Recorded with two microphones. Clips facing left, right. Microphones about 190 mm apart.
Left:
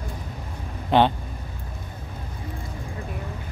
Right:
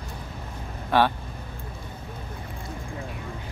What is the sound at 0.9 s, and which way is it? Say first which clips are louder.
Vehicle: left 3 dB; 20° left (ahead or behind).